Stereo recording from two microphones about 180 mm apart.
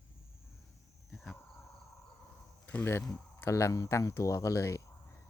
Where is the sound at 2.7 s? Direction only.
15° left (ahead or behind).